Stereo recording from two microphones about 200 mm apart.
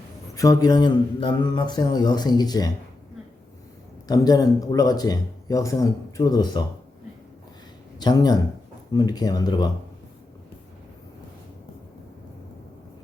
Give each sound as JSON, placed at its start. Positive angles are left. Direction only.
{"t": 0.3, "sound": "speech", "side_deg": 20}
{"t": 4.1, "sound": "speech", "side_deg": 20}
{"t": 7.9, "sound": "speech", "side_deg": 20}